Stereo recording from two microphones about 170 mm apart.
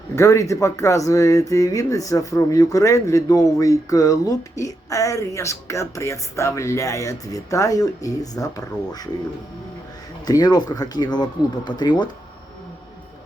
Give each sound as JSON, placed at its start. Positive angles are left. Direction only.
{"t": 0.2, "sound": "speech", "side_deg": 20}
{"t": 10.2, "sound": "speech", "side_deg": 25}